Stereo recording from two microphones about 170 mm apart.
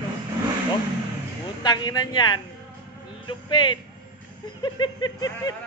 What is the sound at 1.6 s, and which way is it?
Speech, 25° left (ahead or behind).